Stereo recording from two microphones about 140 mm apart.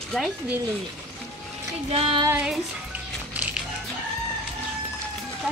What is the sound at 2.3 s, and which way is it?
Speech, 5° right (ahead or behind).